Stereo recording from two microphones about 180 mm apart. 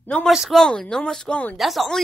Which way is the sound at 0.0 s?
5° left (ahead or behind).